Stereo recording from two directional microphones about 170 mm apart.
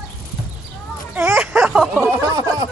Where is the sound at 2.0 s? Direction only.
20° right (ahead or behind).